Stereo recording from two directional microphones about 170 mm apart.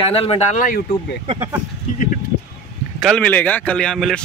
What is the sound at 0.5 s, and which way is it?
Speech, 50° left (ahead or behind).